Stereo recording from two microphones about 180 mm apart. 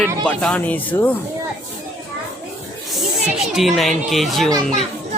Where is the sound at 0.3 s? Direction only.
5° left (ahead or behind).